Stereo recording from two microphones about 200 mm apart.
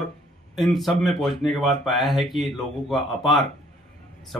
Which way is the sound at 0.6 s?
Centre (ahead or behind).